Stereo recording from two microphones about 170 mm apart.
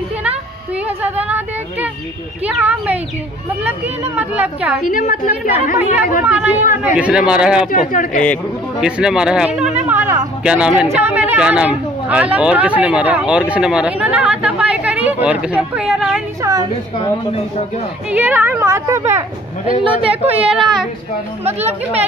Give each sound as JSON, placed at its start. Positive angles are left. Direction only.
{"t": 1.1, "sound": "a sound", "side_deg": -10}
{"t": 2.4, "sound": "speech", "side_deg": -10}
{"t": 4.8, "sound": "a woman's voice", "side_deg": 50}
{"t": 6.2, "sound": "speech", "side_deg": -10}
{"t": 7.7, "sound": "a woman's voice", "side_deg": 55}
{"t": 8.8, "sound": "speech", "side_deg": -5}
{"t": 18.1, "sound": "speech", "side_deg": -10}
{"t": 19.7, "sound": "a man's voice", "side_deg": -30}
{"t": 20.3, "sound": "speech", "side_deg": -5}